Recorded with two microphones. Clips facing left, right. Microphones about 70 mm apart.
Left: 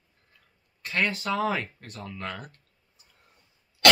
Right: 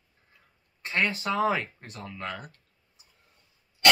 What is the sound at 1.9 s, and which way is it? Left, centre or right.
Speech, centre.